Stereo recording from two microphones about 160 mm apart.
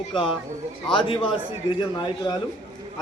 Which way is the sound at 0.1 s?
35° left (ahead or behind).